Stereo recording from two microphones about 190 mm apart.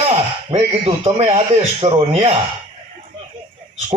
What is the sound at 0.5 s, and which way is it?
A man's voice, 30° right (ahead or behind).